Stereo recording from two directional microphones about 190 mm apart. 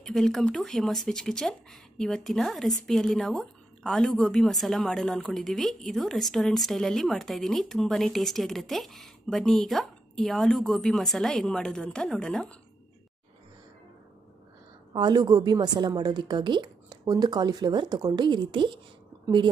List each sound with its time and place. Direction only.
0.0 s speech: centre (ahead or behind)
14.9 s a woman's voice: 20° right (ahead or behind)